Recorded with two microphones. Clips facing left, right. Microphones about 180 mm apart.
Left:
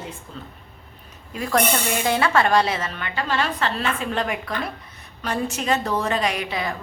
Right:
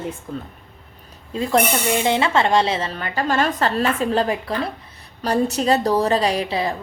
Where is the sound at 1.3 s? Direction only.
25° right (ahead or behind).